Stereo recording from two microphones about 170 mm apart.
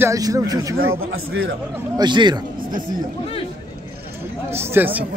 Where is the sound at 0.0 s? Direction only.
20° right (ahead or behind).